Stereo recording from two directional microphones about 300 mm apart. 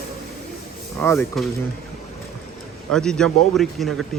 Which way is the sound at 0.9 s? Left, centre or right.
Centre.